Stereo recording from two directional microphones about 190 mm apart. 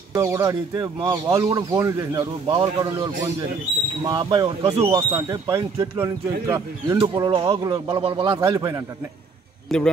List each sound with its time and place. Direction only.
0.1 s speech: 15° right (ahead or behind)
5.1 s speech: 20° right (ahead or behind)
9.7 s speech: 5° left (ahead or behind)